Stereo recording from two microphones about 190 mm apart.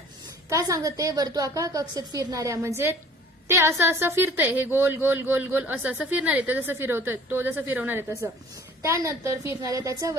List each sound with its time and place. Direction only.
0.5 s speech: 15° right (ahead or behind)